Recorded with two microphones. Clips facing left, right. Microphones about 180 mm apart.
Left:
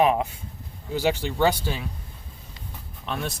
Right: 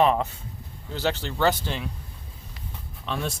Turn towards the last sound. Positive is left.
turn(degrees=0)  # may be behind; listen again after turning